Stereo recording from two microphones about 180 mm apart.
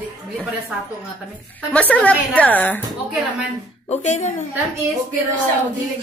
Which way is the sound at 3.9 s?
40° left (ahead or behind).